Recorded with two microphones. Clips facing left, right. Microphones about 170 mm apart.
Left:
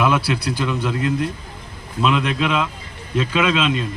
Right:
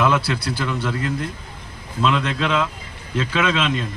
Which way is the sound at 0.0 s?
15° left (ahead or behind).